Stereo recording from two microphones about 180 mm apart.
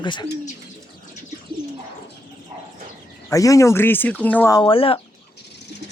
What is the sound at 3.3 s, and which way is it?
Speech, 20° left (ahead or behind).